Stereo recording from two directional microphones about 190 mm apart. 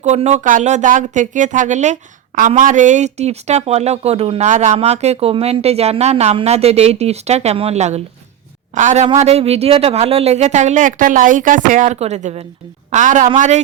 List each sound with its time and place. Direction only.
0.0 s speech: 35° right (ahead or behind)